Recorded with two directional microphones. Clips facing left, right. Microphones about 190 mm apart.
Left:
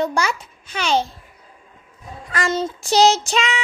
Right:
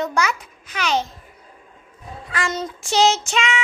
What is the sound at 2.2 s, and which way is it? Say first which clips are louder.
Child singing: left 4 dB; 40° left (ahead or behind).